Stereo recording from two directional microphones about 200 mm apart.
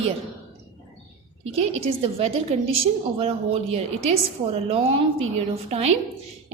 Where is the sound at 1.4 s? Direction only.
30° right (ahead or behind).